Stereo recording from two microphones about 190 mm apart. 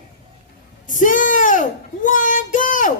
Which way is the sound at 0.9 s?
45° left (ahead or behind).